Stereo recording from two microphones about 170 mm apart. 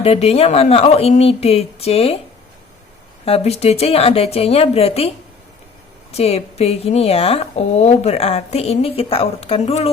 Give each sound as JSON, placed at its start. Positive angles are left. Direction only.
{"t": 0.0, "sound": "speech", "side_deg": 35}
{"t": 3.2, "sound": "speech", "side_deg": 35}